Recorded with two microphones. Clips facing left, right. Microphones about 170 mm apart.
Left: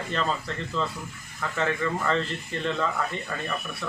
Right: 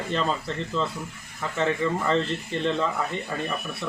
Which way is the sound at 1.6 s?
15° right (ahead or behind).